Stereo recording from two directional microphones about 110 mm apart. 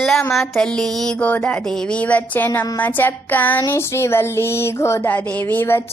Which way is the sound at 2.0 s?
15° left (ahead or behind).